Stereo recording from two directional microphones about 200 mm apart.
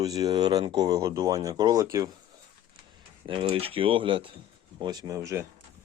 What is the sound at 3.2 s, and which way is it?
Speech, 25° right (ahead or behind).